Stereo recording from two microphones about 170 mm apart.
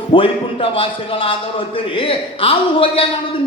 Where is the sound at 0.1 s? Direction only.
30° left (ahead or behind).